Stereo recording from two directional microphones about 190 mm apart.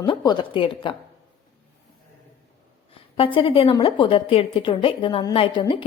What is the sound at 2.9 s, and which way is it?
A woman's voice, 30° left (ahead or behind).